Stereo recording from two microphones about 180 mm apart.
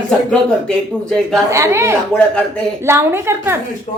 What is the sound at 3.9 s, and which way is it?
Speech, 35° left (ahead or behind).